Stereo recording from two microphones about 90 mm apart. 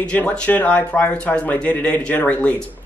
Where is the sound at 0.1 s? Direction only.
15° left (ahead or behind).